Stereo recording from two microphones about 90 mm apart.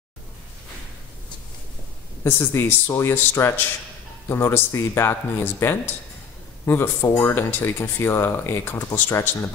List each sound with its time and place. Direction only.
2.2 s speech: 25° left (ahead or behind)